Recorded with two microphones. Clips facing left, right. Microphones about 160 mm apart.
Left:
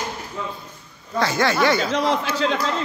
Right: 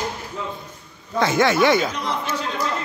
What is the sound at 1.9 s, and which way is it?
Speech, 90° left.